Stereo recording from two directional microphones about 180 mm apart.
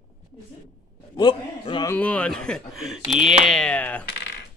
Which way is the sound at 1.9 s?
10° left (ahead or behind).